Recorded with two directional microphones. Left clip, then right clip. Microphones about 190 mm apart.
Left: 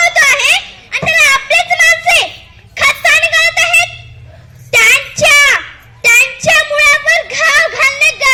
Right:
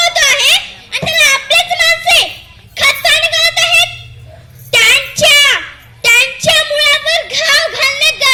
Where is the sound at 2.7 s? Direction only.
35° right (ahead or behind).